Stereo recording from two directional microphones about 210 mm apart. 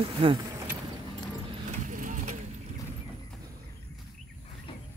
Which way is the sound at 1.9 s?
40° right (ahead or behind).